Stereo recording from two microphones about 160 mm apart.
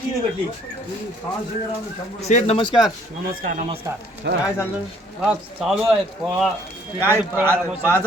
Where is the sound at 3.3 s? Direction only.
60° right (ahead or behind).